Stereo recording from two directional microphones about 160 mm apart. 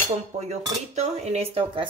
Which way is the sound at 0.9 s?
45° right (ahead or behind).